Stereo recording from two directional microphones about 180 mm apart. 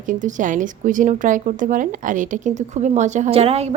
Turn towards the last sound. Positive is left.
turn(degrees=-35)  # may be behind; listen again after turning